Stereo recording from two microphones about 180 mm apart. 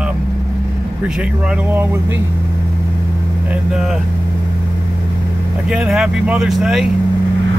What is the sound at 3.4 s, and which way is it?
Speech, centre (ahead or behind).